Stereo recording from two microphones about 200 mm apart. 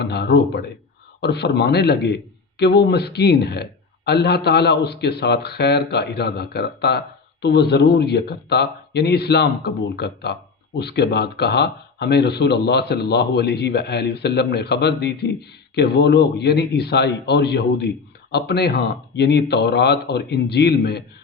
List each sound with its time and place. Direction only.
0.0 s speech: 55° left (ahead or behind)